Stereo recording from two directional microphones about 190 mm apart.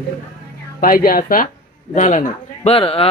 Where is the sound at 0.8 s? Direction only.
50° left (ahead or behind).